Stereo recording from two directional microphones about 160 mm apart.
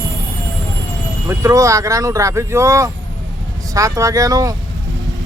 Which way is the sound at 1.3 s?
20° right (ahead or behind).